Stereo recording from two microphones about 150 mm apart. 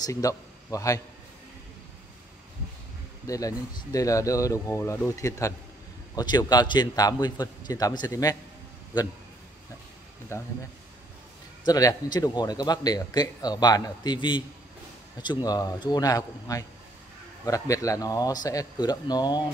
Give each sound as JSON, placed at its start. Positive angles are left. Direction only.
{"t": 0.0, "sound": "a man's voice", "side_deg": 20}
{"t": 3.3, "sound": "a man's voice", "side_deg": 25}
{"t": 10.3, "sound": "a man's voice", "side_deg": 20}
{"t": 11.6, "sound": "a man's voice", "side_deg": 25}